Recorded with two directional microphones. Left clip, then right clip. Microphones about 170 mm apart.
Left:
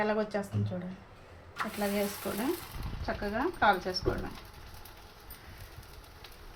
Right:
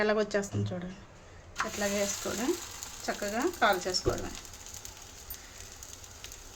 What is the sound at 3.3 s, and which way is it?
Speech, 25° right (ahead or behind).